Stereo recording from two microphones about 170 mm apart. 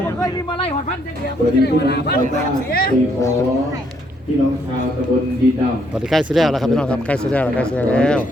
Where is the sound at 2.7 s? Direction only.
60° left (ahead or behind).